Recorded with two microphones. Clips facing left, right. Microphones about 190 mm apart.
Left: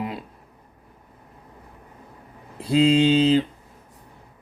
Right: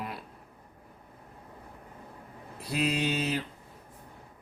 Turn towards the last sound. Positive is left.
turn(degrees=25)  # may be behind; listen again after turning